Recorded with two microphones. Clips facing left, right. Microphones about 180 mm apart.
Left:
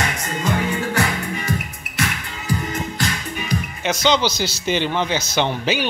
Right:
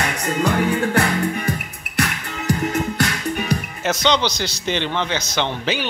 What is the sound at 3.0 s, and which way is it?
Music, 65° right (ahead or behind).